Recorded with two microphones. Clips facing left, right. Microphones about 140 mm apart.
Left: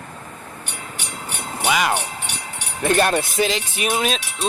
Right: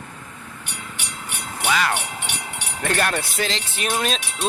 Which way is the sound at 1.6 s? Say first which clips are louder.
Left 2 dB; 15° left (ahead or behind).